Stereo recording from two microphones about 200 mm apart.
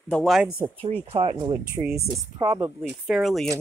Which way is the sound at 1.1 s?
25° right (ahead or behind).